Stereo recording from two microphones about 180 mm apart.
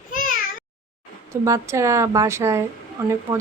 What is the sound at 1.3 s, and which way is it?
Speech, 15° right (ahead or behind).